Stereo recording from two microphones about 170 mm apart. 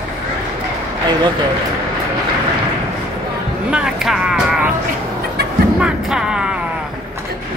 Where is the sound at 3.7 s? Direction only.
5° right (ahead or behind).